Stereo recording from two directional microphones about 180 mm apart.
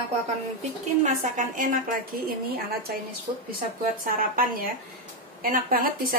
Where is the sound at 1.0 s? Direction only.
45° right (ahead or behind).